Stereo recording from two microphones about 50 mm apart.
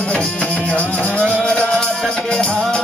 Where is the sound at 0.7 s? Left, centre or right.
Left.